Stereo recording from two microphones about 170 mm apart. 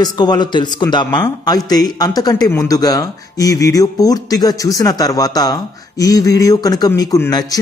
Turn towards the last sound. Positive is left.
turn(degrees=20)  # may be behind; listen again after turning